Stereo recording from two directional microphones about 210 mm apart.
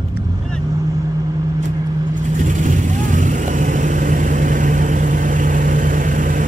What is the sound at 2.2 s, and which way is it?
Vehicle, 35° right (ahead or behind).